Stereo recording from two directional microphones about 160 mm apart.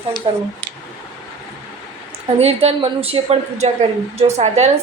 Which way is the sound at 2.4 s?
40° right (ahead or behind).